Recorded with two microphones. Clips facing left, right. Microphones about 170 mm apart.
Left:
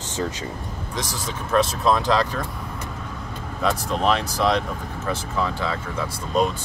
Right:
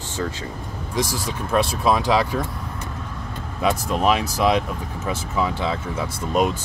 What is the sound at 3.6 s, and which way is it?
Speech, 10° right (ahead or behind).